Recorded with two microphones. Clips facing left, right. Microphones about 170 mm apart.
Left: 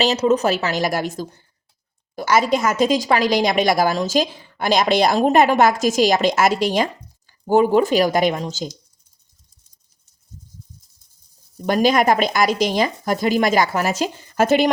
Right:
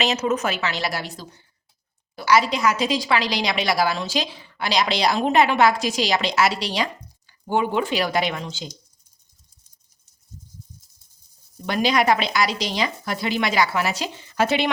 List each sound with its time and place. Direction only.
0.0 s a woman's voice: 35° left (ahead or behind)
11.6 s a woman's voice: 45° left (ahead or behind)